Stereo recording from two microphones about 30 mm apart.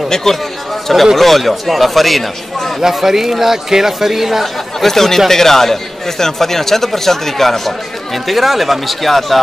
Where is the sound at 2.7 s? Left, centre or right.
Centre.